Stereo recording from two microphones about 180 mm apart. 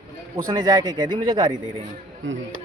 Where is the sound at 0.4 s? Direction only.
20° right (ahead or behind).